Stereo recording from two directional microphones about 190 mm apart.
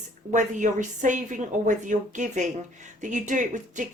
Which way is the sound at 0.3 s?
40° right (ahead or behind).